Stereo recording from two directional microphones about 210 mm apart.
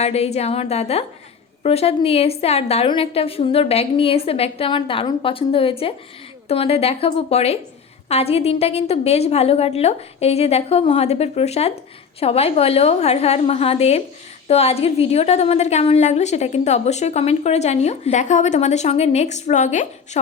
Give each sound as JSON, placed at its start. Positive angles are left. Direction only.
{"t": 0.0, "sound": "a woman's voice", "side_deg": 30}